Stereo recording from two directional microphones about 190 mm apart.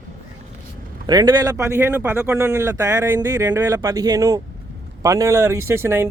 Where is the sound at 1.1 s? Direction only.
20° right (ahead or behind).